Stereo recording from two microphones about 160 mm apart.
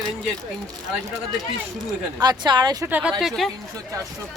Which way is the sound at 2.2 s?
25° right (ahead or behind).